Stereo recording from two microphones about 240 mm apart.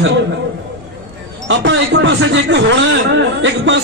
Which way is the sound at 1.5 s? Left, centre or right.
Right.